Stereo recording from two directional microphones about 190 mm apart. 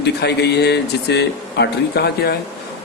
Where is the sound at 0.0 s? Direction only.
60° left (ahead or behind).